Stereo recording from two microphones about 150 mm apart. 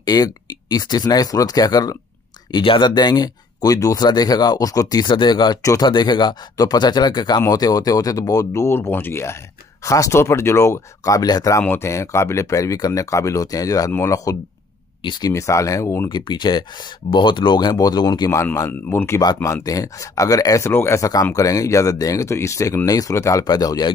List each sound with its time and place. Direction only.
0.0 s speech: 25° left (ahead or behind)
16.1 s speech: 30° left (ahead or behind)